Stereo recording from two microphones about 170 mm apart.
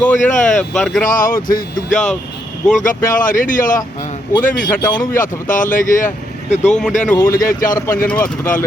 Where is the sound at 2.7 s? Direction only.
50° left (ahead or behind).